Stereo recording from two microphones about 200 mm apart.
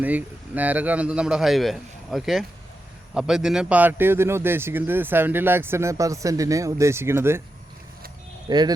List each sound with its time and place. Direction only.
0.0 s a man's voice: 10° right (ahead or behind)
8.4 s speech: 20° right (ahead or behind)